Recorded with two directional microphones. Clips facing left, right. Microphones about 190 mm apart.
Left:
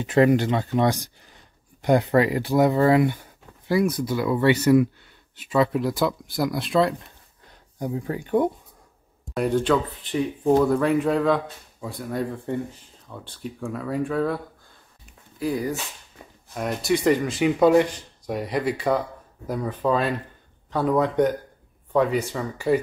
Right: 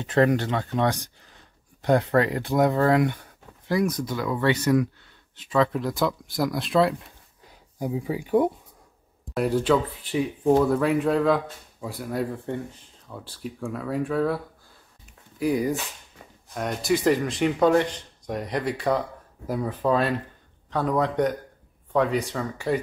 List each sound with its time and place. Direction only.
0.0 s speech: 10° left (ahead or behind)
15.3 s speech: 15° right (ahead or behind)
16.5 s speech: centre (ahead or behind)